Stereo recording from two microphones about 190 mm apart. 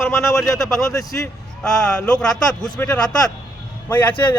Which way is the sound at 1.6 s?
5° left (ahead or behind).